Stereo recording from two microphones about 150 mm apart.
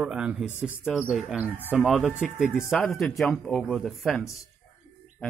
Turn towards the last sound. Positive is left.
turn(degrees=0)  # may be behind; listen again after turning